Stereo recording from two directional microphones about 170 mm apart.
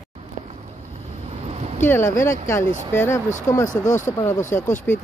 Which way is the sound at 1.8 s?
15° left (ahead or behind).